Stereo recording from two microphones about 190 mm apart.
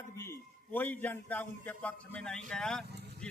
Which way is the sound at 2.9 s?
60° right (ahead or behind).